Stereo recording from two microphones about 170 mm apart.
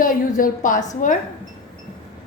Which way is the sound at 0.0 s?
55° left (ahead or behind).